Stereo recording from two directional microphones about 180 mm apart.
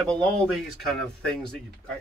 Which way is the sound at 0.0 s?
5° left (ahead or behind).